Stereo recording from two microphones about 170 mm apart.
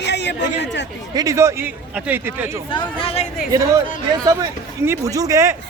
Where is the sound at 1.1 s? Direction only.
20° right (ahead or behind).